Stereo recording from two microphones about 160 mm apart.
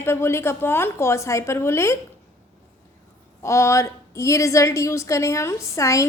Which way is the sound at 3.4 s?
20° left (ahead or behind).